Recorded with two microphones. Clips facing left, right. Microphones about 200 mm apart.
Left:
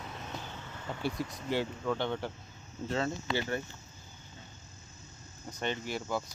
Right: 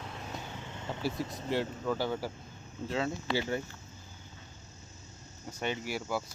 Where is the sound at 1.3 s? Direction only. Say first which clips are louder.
Even; centre (ahead or behind).